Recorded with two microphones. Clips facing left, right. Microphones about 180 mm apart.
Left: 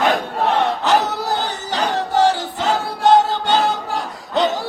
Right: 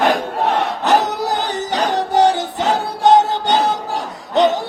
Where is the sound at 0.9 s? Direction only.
20° right (ahead or behind).